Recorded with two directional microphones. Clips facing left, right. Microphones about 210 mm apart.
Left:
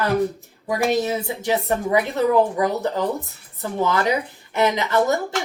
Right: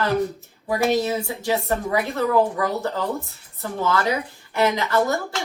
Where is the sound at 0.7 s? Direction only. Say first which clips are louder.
Even; 15° left (ahead or behind).